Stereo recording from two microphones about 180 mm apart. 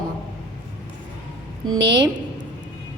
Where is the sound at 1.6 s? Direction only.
25° right (ahead or behind).